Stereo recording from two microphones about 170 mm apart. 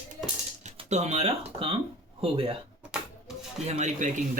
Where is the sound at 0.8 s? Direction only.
40° right (ahead or behind).